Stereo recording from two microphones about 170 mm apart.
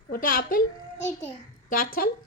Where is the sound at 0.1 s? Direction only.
55° left (ahead or behind).